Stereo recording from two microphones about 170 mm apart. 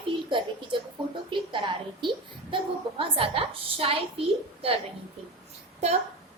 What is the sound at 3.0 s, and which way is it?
A woman's voice, 35° right (ahead or behind).